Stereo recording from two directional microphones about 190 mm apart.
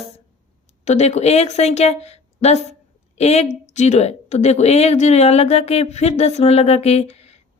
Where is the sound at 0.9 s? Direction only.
35° left (ahead or behind).